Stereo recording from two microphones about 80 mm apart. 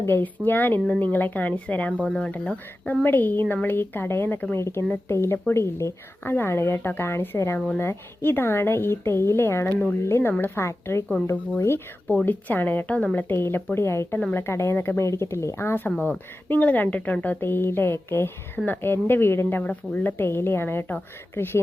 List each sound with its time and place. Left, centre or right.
0.0 s a woman's voice: left
12.2 s a woman's voice: left